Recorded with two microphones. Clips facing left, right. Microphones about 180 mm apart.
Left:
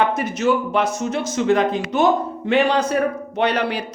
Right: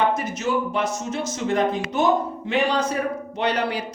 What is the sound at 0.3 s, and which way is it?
Speech, 70° left (ahead or behind).